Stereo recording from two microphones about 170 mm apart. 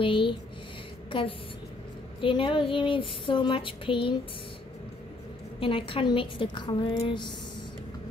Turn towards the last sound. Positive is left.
turn(degrees=30)  # may be behind; listen again after turning